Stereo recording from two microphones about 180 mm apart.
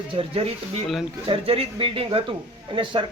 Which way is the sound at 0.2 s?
30° right (ahead or behind).